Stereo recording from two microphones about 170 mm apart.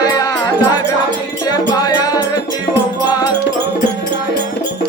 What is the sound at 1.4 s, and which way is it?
Music, 25° left (ahead or behind).